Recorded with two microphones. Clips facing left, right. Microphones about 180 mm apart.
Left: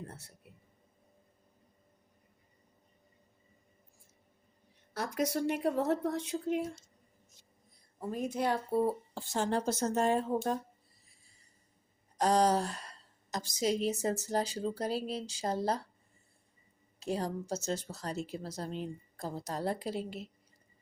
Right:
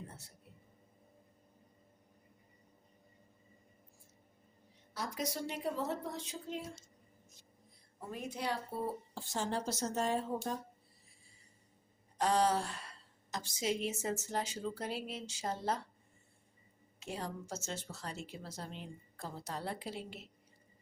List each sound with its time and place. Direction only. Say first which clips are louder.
4.9 s speech: left 7 dB; 60° left (ahead or behind)
8.1 s a woman's voice: left 7 dB; 45° left (ahead or behind)
9.1 s speech: left 5 dB; 65° left (ahead or behind)
12.1 s a woman's voice: left 4 dB; 40° left (ahead or behind)
17.0 s a woman's voice: left 7 dB; 35° left (ahead or behind)